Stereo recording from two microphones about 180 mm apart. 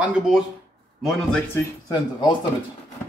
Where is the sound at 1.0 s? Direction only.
5° left (ahead or behind).